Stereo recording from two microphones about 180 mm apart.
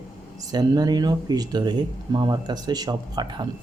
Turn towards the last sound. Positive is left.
turn(degrees=-25)  # may be behind; listen again after turning